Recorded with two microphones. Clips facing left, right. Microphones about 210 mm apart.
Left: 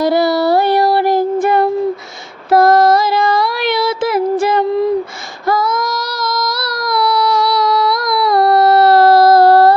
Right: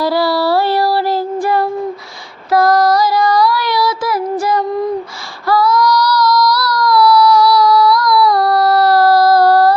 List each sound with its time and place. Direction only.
0.0 s child singing: 20° left (ahead or behind)
2.5 s female singing: 25° left (ahead or behind)
5.5 s child singing: 20° left (ahead or behind)